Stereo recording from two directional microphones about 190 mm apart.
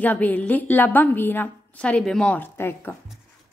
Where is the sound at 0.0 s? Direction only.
10° left (ahead or behind).